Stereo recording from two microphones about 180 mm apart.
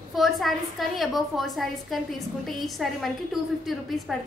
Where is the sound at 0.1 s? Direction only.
Centre (ahead or behind).